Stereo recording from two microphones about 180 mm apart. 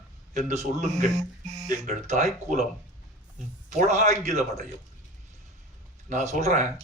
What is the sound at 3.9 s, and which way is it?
Speech, 40° right (ahead or behind).